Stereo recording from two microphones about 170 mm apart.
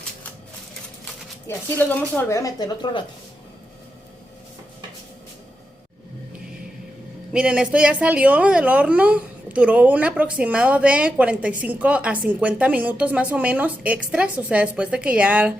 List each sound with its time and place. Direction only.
1.5 s speech: 10° left (ahead or behind); by 3.0 s 25° left (ahead or behind)
7.3 s a woman's voice: 5° right (ahead or behind)